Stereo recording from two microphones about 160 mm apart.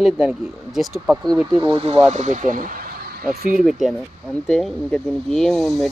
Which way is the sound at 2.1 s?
50° right (ahead or behind).